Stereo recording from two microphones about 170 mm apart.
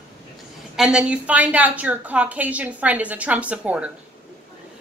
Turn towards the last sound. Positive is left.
turn(degrees=-5)  # may be behind; listen again after turning